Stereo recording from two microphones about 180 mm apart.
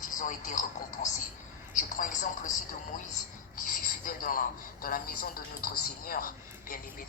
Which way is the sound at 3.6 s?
50° left (ahead or behind).